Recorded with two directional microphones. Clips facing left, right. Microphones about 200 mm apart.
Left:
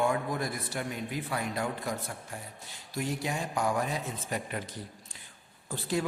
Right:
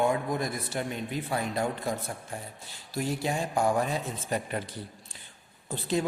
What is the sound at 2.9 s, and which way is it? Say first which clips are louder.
Speech: right 3 dB; 30° right (ahead or behind).